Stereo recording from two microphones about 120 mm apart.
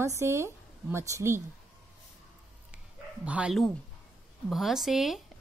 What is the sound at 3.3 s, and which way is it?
A woman's voice, 10° right (ahead or behind).